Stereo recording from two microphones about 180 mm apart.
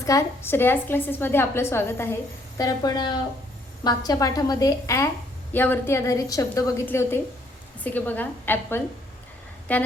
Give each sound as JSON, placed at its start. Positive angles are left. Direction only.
{"t": 0.0, "sound": "a woman's voice", "side_deg": 15}